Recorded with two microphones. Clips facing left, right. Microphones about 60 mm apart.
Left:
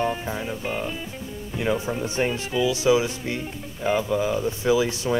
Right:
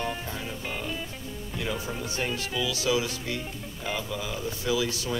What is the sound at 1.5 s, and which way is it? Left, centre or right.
Speech, left.